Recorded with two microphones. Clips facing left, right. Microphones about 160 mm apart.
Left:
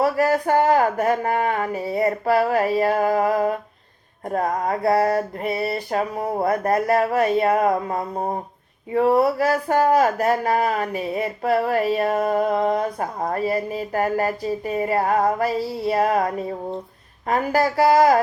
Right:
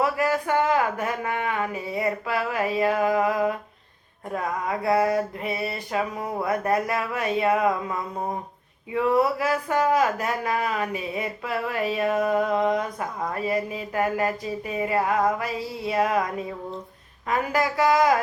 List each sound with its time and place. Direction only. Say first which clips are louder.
0.0 s speech: left 4 dB; 40° left (ahead or behind)